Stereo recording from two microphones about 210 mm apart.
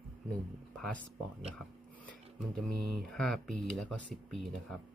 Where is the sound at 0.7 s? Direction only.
5° left (ahead or behind).